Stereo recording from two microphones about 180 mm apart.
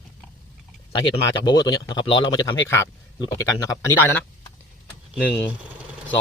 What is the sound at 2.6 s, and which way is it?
Speech, 15° left (ahead or behind).